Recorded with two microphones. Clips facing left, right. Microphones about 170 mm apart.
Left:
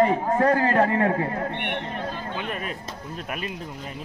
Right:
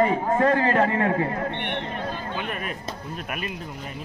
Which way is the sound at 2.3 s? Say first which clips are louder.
Even; 55° right (ahead or behind).